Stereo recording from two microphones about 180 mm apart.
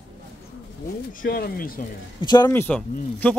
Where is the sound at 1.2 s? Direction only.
55° left (ahead or behind).